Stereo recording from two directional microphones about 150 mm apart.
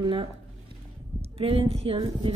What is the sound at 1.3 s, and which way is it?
Speech, 40° right (ahead or behind).